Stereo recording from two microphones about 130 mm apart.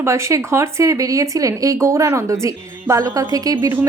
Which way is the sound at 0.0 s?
20° right (ahead or behind).